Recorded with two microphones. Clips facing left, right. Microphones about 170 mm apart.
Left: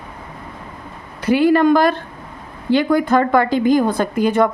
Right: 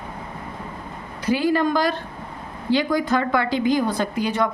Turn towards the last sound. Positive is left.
turn(degrees=50)  # may be behind; listen again after turning